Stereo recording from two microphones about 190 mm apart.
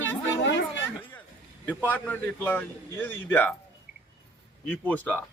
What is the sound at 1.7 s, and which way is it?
A man's voice, 10° left (ahead or behind).